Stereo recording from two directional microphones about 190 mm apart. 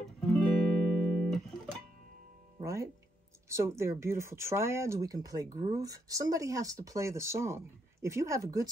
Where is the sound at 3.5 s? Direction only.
15° right (ahead or behind).